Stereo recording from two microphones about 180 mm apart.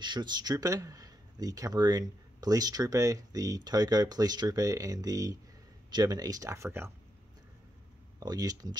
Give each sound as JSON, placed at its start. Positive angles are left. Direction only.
{"t": 0.0, "sound": "speech", "side_deg": -25}
{"t": 8.2, "sound": "speech", "side_deg": -20}